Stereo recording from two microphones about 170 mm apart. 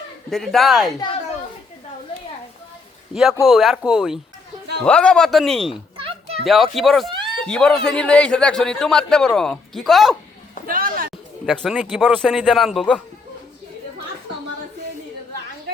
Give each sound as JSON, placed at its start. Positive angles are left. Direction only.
{"t": 0.3, "sound": "a man's voice", "side_deg": 0}
{"t": 3.4, "sound": "a man's voice", "side_deg": 0}
{"t": 6.0, "sound": "children playing", "side_deg": -35}
{"t": 6.4, "sound": "a man's voice", "side_deg": 0}
{"t": 10.7, "sound": "a sound", "side_deg": -55}
{"t": 11.4, "sound": "a man's voice", "side_deg": 0}